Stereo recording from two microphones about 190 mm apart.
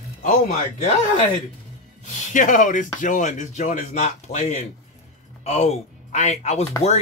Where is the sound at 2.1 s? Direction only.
45° left (ahead or behind).